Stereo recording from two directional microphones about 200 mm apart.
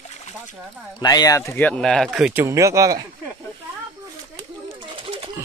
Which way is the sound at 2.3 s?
15° right (ahead or behind).